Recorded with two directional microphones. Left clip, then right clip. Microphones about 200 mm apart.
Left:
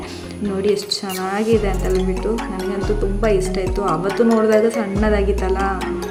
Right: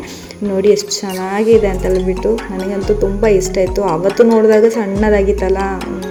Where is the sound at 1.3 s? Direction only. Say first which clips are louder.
Right 8 dB; 10° right (ahead or behind).